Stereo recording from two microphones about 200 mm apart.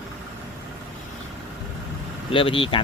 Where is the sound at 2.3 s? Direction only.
25° left (ahead or behind).